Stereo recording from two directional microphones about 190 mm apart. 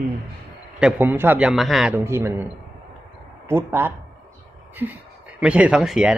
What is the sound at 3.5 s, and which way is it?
Speech, 10° right (ahead or behind).